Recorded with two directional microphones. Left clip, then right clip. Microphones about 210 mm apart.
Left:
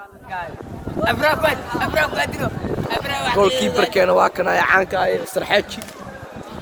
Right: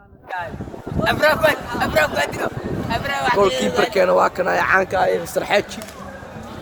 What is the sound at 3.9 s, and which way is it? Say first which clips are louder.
Speech: left 1 dB; 5° left (ahead or behind).